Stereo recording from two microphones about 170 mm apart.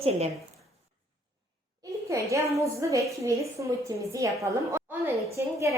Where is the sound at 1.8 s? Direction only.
20° right (ahead or behind).